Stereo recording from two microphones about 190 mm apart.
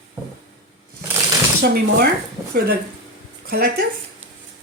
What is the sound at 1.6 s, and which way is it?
Speech, 55° right (ahead or behind).